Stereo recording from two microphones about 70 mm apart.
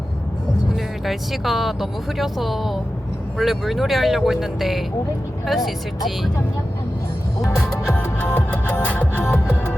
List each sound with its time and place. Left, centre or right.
1.0 s speech: centre
7.5 s speech: centre
7.9 s music: left